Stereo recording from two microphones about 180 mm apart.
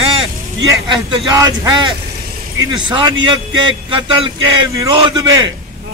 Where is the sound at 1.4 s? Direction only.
25° right (ahead or behind).